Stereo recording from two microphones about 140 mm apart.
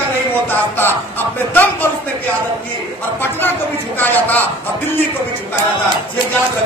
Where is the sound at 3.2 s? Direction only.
15° left (ahead or behind).